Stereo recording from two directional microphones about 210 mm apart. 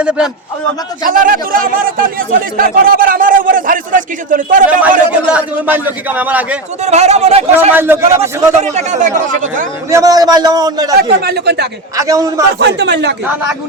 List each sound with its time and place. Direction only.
0.0 s a man's voice: 5° right (ahead or behind)
1.0 s speech: 40° right (ahead or behind)
4.8 s a man's voice: 5° right (ahead or behind)
6.8 s speech: 30° right (ahead or behind)
7.7 s a man's voice: 10° right (ahead or behind)
8.6 s speech: 35° right (ahead or behind)
9.9 s a man's voice: 15° right (ahead or behind)
11.2 s speech: 50° right (ahead or behind)
11.9 s a man's voice: 15° right (ahead or behind)
12.5 s a man's voice: 55° right (ahead or behind)